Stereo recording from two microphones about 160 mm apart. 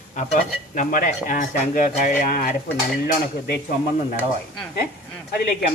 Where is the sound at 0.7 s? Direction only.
55° left (ahead or behind).